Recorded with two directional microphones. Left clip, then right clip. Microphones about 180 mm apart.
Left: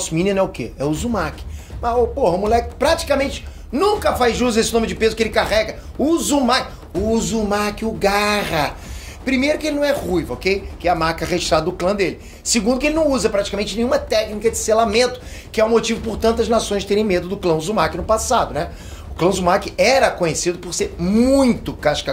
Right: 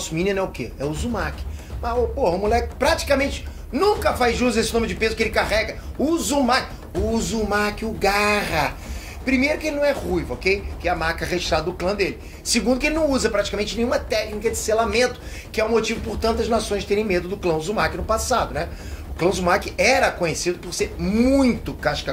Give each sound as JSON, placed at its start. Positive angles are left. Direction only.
{"t": 0.0, "sound": "speech", "side_deg": 40}
{"t": 0.7, "sound": "speech", "side_deg": 65}
{"t": 1.8, "sound": "a woman's voice", "side_deg": 45}
{"t": 2.2, "sound": "a woman's voice", "side_deg": 20}
{"t": 10.8, "sound": "speech", "side_deg": 55}
{"t": 12.4, "sound": "a woman's voice", "side_deg": 20}